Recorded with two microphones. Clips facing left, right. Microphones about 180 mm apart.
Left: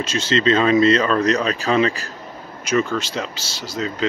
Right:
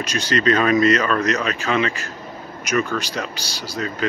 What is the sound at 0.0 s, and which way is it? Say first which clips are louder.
Speech: left 1 dB; 25° left (ahead or behind).